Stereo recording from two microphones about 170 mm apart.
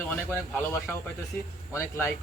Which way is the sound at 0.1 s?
15° left (ahead or behind).